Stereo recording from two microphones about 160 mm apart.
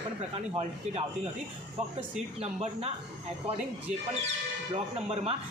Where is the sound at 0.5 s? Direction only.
40° right (ahead or behind).